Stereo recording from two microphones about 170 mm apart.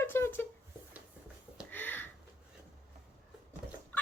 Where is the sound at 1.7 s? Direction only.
10° left (ahead or behind).